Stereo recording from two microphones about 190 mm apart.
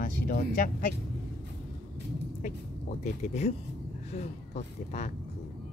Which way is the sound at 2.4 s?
35° left (ahead or behind).